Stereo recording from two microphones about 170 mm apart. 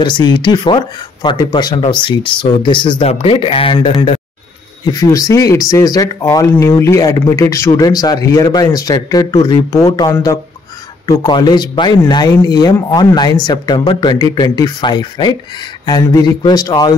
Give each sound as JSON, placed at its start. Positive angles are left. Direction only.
{"t": 0.0, "sound": "speech", "side_deg": 30}
{"t": 4.9, "sound": "speech", "side_deg": 20}